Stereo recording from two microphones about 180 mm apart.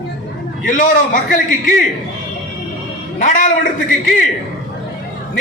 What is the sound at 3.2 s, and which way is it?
Speech, 45° left (ahead or behind).